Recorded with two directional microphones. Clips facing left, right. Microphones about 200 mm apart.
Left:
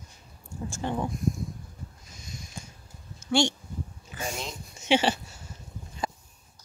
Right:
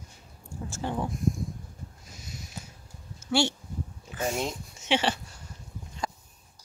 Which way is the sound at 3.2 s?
5° right (ahead or behind).